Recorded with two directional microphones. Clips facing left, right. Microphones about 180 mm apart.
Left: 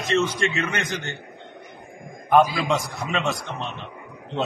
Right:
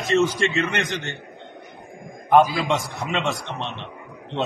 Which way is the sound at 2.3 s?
Centre (ahead or behind).